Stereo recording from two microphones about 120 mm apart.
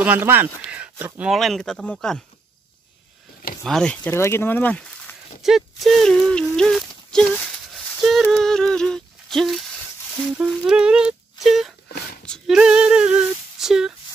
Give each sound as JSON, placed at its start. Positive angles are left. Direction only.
{"t": 0.0, "sound": "speech", "side_deg": -15}
{"t": 1.3, "sound": "speech", "side_deg": 0}
{"t": 3.6, "sound": "speech", "side_deg": 5}
{"t": 4.1, "sound": "speech", "side_deg": 20}
{"t": 5.4, "sound": "speech", "side_deg": 0}
{"t": 10.3, "sound": "a sound", "side_deg": -5}
{"t": 11.4, "sound": "speech", "side_deg": 0}
{"t": 12.5, "sound": "female singing", "side_deg": -10}